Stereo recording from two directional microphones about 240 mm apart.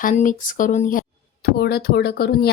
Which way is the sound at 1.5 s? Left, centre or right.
Left.